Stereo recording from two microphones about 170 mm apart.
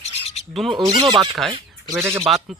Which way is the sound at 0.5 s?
30° right (ahead or behind).